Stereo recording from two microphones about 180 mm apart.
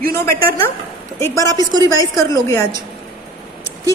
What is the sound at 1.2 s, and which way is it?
A woman's voice, 15° left (ahead or behind).